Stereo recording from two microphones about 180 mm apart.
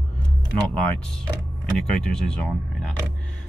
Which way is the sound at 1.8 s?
5° left (ahead or behind).